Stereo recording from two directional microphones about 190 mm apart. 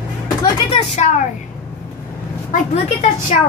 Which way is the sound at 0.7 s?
35° left (ahead or behind).